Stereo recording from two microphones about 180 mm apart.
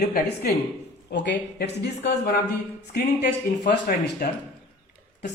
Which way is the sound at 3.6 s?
60° left (ahead or behind).